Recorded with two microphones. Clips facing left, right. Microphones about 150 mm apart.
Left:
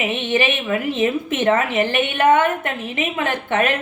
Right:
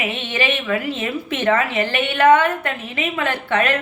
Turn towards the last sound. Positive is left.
turn(degrees=20)  # may be behind; listen again after turning